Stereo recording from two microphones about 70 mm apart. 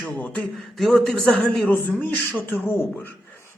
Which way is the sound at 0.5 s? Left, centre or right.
Centre.